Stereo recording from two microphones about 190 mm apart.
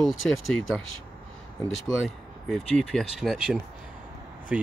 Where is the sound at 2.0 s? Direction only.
Centre (ahead or behind).